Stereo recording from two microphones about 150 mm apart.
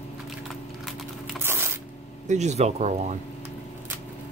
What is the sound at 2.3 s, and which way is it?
Speech, 50° right (ahead or behind).